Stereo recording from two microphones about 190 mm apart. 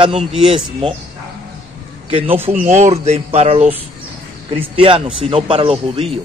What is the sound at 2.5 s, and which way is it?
Speech, 40° right (ahead or behind).